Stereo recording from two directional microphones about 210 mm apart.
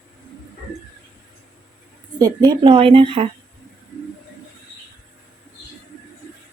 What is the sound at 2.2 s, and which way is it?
Speech, 20° right (ahead or behind).